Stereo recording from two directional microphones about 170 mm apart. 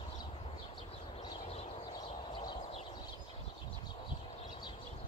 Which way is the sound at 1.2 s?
25° left (ahead or behind).